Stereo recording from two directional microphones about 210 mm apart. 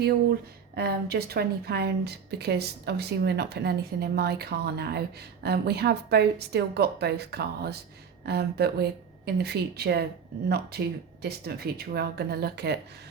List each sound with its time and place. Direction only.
0.8 s a woman's voice: 50° right (ahead or behind)